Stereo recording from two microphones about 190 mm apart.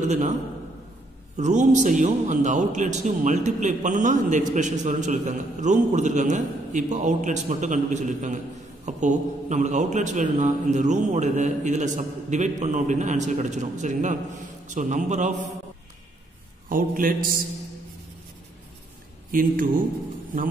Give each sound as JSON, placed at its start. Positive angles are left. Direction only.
{"t": 1.3, "sound": "a man's voice", "side_deg": -40}
{"t": 16.6, "sound": "a man's voice", "side_deg": -45}
{"t": 19.3, "sound": "a man's voice", "side_deg": -45}